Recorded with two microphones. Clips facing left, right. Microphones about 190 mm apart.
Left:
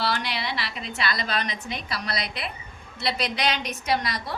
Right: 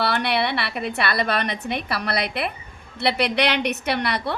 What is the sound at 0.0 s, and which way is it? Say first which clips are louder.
A woman's voice: right 6 dB; 60° right (ahead or behind).